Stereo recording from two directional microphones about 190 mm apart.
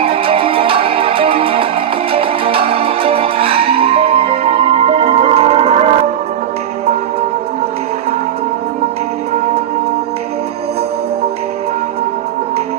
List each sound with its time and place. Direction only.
0.0 s music: 30° right (ahead or behind)